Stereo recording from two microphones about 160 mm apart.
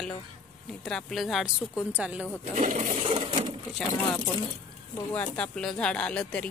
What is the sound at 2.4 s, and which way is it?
Speech, 45° right (ahead or behind).